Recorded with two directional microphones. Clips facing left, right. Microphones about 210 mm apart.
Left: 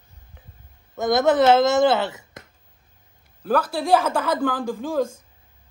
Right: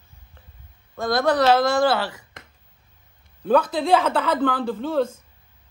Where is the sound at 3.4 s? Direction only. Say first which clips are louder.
Right 3 dB; 5° left (ahead or behind).